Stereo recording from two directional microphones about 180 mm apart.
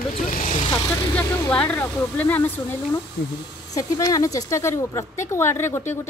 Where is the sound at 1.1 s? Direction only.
5° left (ahead or behind).